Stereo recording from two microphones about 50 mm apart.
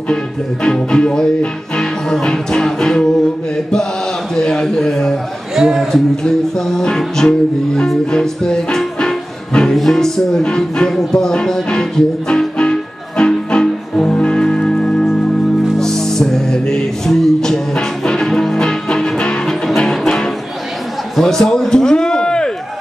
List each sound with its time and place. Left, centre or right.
0.1 s music: centre
4.4 s music: centre
5.6 s speech: centre
5.9 s music: centre
21.2 s a sound: centre